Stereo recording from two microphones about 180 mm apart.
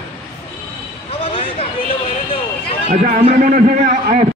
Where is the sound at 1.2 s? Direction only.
30° left (ahead or behind).